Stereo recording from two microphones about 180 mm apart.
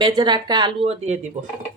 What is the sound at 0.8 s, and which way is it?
Speech, 40° right (ahead or behind).